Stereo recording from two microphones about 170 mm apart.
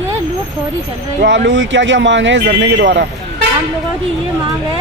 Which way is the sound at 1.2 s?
90° right.